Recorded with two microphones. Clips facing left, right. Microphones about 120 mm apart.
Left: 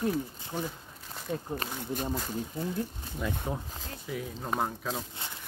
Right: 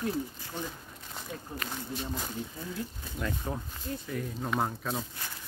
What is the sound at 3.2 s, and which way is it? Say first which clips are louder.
Speech: left 1 dB; 10° left (ahead or behind).